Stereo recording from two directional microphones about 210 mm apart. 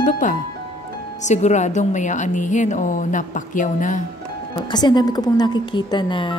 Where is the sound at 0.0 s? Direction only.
40° left (ahead or behind).